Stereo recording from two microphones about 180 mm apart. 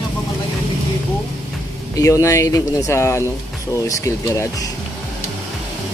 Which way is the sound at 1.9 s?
20° left (ahead or behind).